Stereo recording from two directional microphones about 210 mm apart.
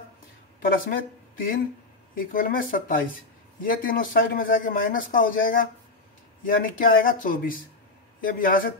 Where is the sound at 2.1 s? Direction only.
40° left (ahead or behind).